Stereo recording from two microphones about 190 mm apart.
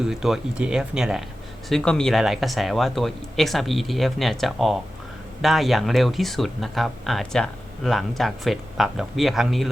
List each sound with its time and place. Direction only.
0.0 s speech: centre (ahead or behind)